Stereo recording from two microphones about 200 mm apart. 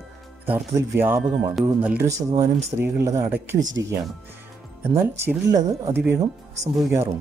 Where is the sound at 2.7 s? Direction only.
10° right (ahead or behind).